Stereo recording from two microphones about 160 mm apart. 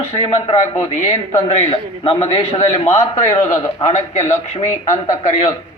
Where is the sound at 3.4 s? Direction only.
30° left (ahead or behind).